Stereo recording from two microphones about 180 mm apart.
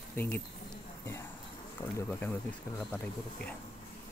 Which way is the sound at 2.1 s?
10° left (ahead or behind).